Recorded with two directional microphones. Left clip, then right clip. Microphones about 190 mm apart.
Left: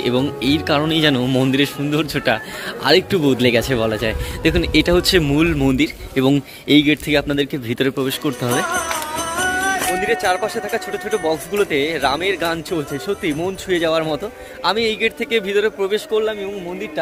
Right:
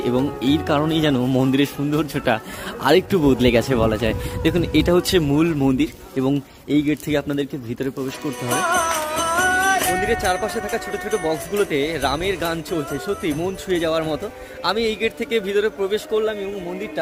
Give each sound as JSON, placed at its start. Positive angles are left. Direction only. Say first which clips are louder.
{"t": 0.0, "sound": "speech", "louder": "left 2 dB", "side_deg": -10}
{"t": 7.7, "sound": "speech", "louder": "left 7 dB", "side_deg": 0}